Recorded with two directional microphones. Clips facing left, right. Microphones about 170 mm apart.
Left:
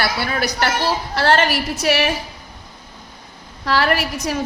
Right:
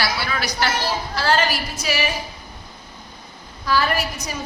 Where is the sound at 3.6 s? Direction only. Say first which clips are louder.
Left 2 dB; 75° left (ahead or behind).